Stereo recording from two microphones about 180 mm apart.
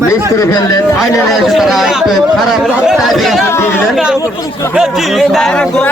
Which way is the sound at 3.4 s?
15° left (ahead or behind).